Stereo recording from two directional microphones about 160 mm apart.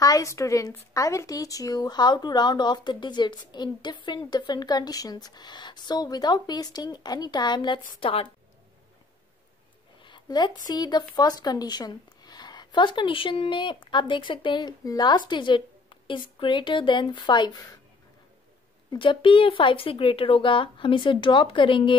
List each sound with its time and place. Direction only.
0.0 s a woman's voice: 20° left (ahead or behind)
10.0 s a sound: 30° left (ahead or behind)
10.7 s a woman's voice: 25° left (ahead or behind)
18.9 s speech: 30° left (ahead or behind)